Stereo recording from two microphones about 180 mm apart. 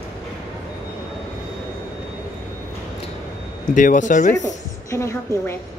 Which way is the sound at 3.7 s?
45° left (ahead or behind).